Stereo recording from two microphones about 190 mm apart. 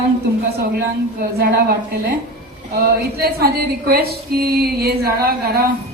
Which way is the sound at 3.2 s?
55° right (ahead or behind).